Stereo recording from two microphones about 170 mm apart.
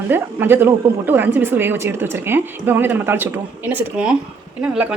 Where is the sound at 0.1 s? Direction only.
10° right (ahead or behind).